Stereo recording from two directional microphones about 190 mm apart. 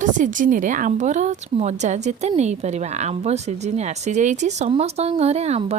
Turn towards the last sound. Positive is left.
turn(degrees=-35)  # may be behind; listen again after turning